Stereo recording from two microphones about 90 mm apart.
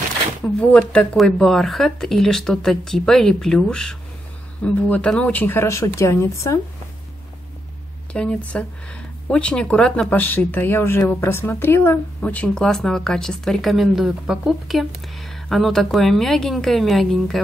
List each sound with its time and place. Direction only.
0.6 s a woman's voice: 10° left (ahead or behind); by 6.6 s 35° left (ahead or behind)
8.1 s speech: 10° left (ahead or behind)
10.1 s speech: 20° left (ahead or behind)
12.2 s a woman's voice: 15° left (ahead or behind)